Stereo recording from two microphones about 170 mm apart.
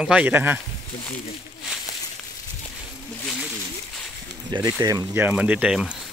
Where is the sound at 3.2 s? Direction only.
5° right (ahead or behind).